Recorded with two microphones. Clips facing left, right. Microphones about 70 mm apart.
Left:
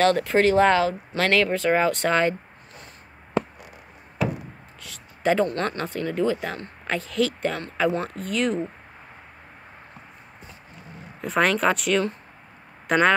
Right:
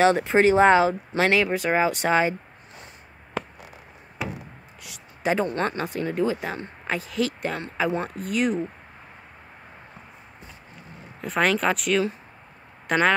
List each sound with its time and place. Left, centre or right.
0.0 s speech: centre
4.8 s speech: centre
11.1 s speech: centre